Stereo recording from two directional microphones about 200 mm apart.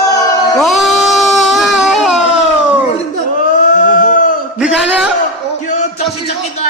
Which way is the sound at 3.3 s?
40° left (ahead or behind).